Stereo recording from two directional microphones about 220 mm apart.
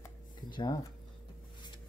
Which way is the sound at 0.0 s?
20° left (ahead or behind).